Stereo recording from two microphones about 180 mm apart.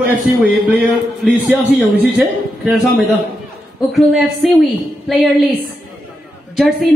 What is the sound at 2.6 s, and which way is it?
Speech, centre (ahead or behind).